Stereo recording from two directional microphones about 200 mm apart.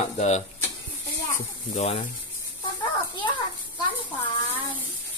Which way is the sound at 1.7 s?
35° left (ahead or behind).